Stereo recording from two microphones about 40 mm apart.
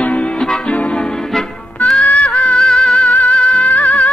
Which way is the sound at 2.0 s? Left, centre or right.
Left.